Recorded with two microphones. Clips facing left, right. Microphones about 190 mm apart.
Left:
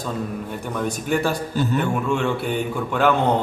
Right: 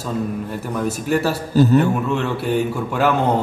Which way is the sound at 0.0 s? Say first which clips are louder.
Right 3 dB; 5° right (ahead or behind).